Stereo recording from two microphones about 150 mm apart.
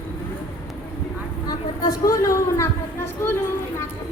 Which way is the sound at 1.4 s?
25° left (ahead or behind).